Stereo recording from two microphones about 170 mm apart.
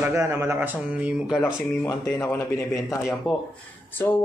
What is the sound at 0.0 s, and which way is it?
Speech, 15° right (ahead or behind).